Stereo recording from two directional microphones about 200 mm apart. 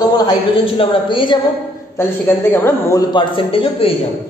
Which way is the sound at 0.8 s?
25° left (ahead or behind).